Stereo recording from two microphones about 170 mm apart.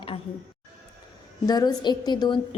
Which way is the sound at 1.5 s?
25° left (ahead or behind).